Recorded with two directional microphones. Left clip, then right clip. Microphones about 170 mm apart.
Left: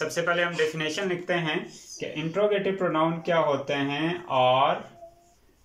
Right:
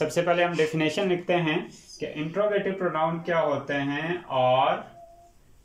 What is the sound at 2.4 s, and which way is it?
Speech, 10° left (ahead or behind).